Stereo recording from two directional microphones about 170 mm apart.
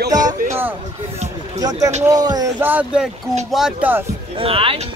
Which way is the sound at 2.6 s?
10° right (ahead or behind).